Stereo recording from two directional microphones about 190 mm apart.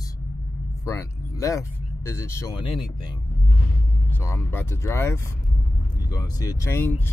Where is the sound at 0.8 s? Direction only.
15° left (ahead or behind).